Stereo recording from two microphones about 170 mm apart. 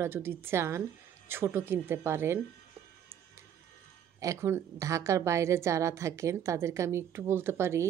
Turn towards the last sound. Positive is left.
turn(degrees=-15)  # may be behind; listen again after turning